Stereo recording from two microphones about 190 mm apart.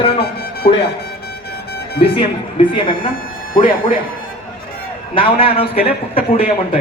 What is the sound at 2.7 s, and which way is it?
Speech, 25° left (ahead or behind).